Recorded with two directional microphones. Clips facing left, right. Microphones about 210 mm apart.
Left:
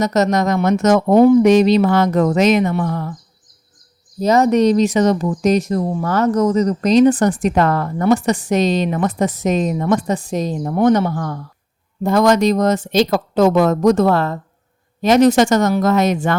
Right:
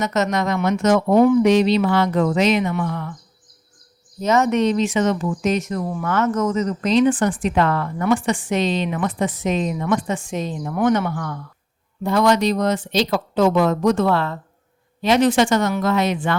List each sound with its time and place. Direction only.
0.0 s speech: 40° left (ahead or behind)
4.2 s speech: 35° left (ahead or behind)